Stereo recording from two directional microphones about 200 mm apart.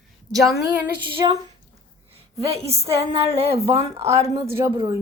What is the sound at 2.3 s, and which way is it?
Speech, 30° right (ahead or behind).